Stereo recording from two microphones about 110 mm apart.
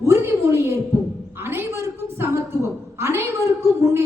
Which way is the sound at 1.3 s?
20° right (ahead or behind).